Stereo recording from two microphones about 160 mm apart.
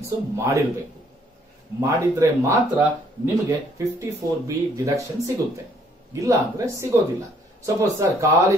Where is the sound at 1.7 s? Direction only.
20° right (ahead or behind).